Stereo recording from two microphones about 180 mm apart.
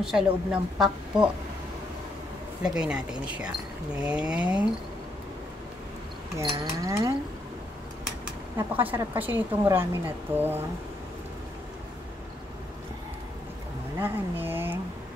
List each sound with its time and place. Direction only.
0.0 s a woman's voice: 5° right (ahead or behind)
2.6 s a woman's voice: 5° right (ahead or behind)
6.3 s a woman's voice: 20° right (ahead or behind)
8.7 s a woman's voice: 10° right (ahead or behind)
13.9 s a sound: 10° right (ahead or behind)